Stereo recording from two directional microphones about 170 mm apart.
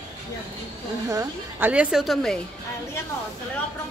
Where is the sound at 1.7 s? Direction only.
5° right (ahead or behind).